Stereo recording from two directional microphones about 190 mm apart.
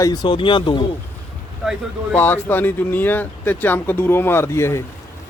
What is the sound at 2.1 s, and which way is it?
Speech, 10° left (ahead or behind).